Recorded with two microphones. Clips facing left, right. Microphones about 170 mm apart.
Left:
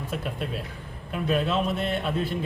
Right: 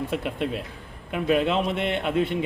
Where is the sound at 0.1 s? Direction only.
70° right (ahead or behind).